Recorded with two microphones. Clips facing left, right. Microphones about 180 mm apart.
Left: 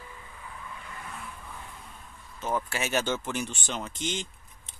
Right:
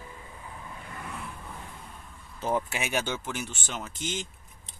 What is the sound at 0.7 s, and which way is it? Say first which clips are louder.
Vehicle: right 1 dB; 40° right (ahead or behind).